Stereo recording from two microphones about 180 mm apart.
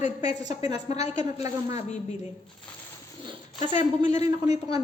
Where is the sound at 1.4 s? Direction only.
20° right (ahead or behind).